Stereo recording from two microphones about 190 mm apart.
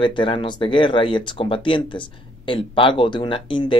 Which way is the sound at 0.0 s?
25° left (ahead or behind).